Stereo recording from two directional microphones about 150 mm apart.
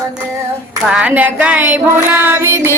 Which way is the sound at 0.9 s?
10° right (ahead or behind).